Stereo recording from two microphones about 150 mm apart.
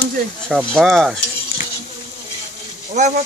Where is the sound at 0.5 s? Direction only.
Centre (ahead or behind).